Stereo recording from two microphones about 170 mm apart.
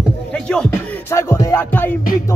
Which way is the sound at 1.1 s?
15° left (ahead or behind).